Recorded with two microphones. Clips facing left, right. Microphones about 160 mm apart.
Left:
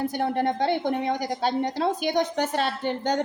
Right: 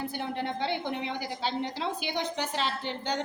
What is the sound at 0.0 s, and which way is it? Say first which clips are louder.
A woman's voice: left 8 dB; 50° left (ahead or behind).